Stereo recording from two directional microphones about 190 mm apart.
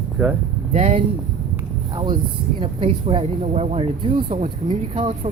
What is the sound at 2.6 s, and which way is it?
Speech, 30° right (ahead or behind).